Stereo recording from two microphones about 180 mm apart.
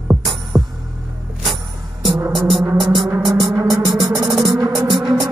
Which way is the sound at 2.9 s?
25° right (ahead or behind).